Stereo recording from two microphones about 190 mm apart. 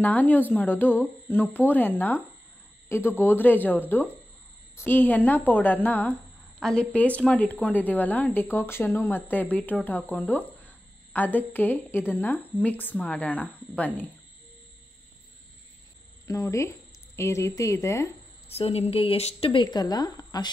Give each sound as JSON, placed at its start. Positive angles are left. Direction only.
{"t": 0.0, "sound": "speech", "side_deg": 10}
{"t": 16.3, "sound": "speech", "side_deg": 15}
{"t": 18.5, "sound": "speech", "side_deg": 30}